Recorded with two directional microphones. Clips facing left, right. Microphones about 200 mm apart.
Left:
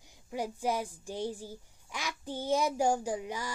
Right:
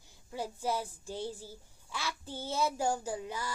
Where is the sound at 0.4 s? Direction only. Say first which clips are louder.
Left 2 dB; 15° left (ahead or behind).